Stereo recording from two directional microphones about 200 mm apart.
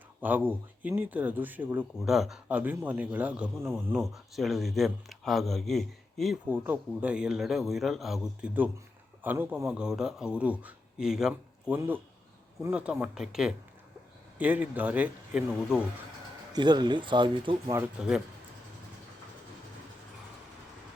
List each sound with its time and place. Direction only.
0.2 s speech: 10° right (ahead or behind)
4.0 s speech: centre (ahead or behind)
16.5 s speech: 20° right (ahead or behind)
17.7 s speech: 5° right (ahead or behind)